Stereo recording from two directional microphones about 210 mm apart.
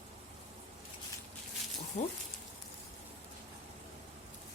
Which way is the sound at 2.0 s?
35° left (ahead or behind).